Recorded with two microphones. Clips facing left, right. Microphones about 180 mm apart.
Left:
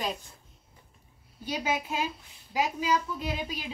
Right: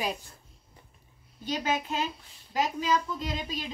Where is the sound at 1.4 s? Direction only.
10° left (ahead or behind).